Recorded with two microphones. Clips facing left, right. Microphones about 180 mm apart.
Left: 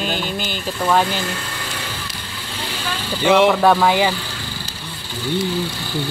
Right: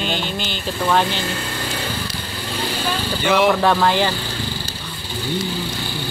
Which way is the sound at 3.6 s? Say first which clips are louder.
Left 2 dB; centre (ahead or behind).